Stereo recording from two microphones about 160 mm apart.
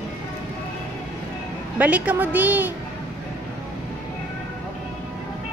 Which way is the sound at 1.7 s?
10° right (ahead or behind).